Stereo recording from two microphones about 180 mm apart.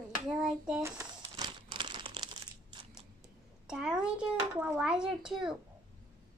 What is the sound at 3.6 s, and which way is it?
A child's voice, 5° right (ahead or behind).